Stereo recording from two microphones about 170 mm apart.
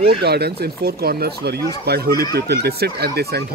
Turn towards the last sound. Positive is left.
turn(degrees=-70)  # may be behind; listen again after turning